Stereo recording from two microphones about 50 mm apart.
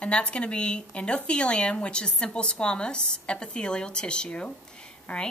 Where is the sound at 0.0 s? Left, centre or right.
Left.